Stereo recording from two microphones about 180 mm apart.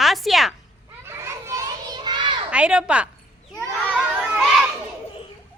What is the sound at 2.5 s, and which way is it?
Speech, 5° right (ahead or behind).